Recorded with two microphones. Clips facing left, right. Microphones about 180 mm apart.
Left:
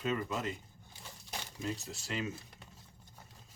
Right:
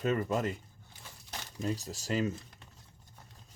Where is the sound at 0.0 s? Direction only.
45° right (ahead or behind).